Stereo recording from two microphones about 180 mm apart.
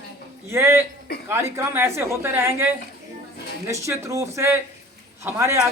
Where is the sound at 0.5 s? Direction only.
15° right (ahead or behind).